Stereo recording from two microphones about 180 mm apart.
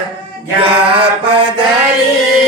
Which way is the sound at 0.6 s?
30° right (ahead or behind).